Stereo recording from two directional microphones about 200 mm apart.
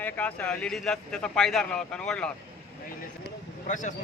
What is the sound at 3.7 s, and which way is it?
Speech, 40° left (ahead or behind).